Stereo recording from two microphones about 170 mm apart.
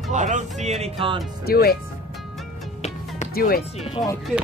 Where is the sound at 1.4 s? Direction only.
65° left (ahead or behind).